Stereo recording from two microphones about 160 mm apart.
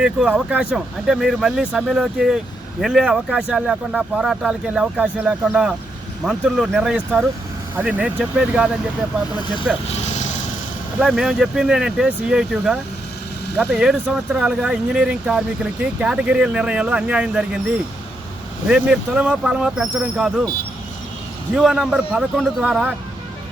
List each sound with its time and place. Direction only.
0.0 s speech: 5° right (ahead or behind)
9.8 s vehicle: 40° left (ahead or behind)
11.0 s speech: 5° right (ahead or behind)
18.7 s speech: 5° right (ahead or behind)
21.5 s speech: 5° right (ahead or behind)